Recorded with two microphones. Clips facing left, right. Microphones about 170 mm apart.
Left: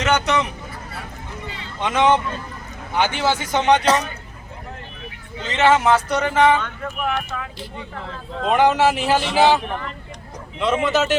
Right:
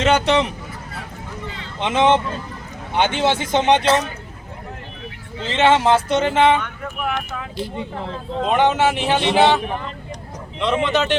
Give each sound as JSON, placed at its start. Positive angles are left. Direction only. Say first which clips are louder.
{"t": 0.0, "sound": "speech", "louder": "right 3 dB", "side_deg": -30}
{"t": 1.8, "sound": "speech", "louder": "right 1 dB", "side_deg": -25}
{"t": 5.5, "sound": "speech", "louder": "right 1 dB", "side_deg": -25}
{"t": 8.4, "sound": "speech", "louder": "left 1 dB", "side_deg": 0}
{"t": 9.6, "sound": "speech", "louder": "right 1 dB", "side_deg": -15}
{"t": 10.6, "sound": "speech", "louder": "even", "side_deg": 0}